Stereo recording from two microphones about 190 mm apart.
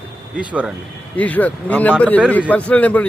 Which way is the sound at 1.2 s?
10° left (ahead or behind).